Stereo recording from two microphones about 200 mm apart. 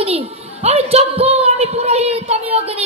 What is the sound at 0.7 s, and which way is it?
Child singing, 30° right (ahead or behind).